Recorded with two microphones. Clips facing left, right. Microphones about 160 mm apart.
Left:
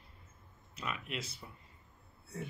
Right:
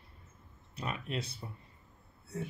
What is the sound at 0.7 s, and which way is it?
Speech, 35° right (ahead or behind).